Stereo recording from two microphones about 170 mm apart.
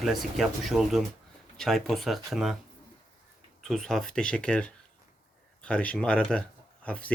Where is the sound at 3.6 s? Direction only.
Centre (ahead or behind).